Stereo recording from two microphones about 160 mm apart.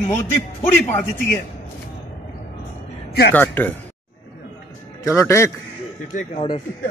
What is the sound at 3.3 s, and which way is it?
Speech, 10° left (ahead or behind).